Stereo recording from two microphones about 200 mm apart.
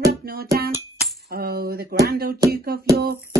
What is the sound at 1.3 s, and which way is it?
Coin, 50° right (ahead or behind).